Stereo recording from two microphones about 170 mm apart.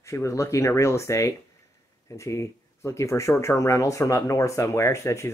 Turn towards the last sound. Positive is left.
turn(degrees=15)  # may be behind; listen again after turning